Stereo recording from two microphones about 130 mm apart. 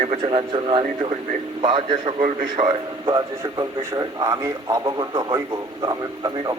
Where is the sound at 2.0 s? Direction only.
90° right.